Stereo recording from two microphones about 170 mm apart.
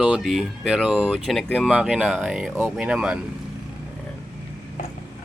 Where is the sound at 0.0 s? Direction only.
5° right (ahead or behind).